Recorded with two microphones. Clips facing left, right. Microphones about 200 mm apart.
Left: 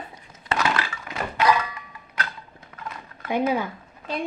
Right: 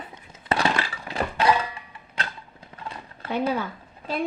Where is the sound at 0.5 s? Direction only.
30° right (ahead or behind).